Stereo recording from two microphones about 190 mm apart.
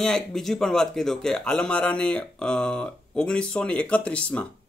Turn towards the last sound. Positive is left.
turn(degrees=5)  # may be behind; listen again after turning